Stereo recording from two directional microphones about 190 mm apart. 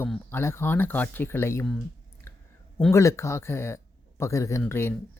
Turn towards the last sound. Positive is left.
turn(degrees=10)  # may be behind; listen again after turning